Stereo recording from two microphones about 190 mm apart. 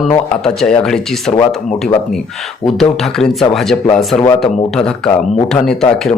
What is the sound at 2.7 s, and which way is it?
Speech, centre (ahead or behind).